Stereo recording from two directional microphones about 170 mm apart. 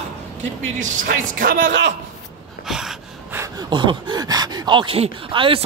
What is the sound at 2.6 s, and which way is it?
Gasp, 5° right (ahead or behind).